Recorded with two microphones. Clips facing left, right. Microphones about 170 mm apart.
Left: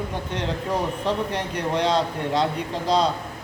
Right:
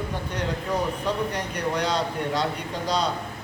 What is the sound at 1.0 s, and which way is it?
A man's voice, 25° left (ahead or behind).